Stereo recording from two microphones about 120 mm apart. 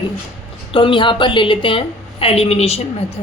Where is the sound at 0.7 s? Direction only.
45° left (ahead or behind).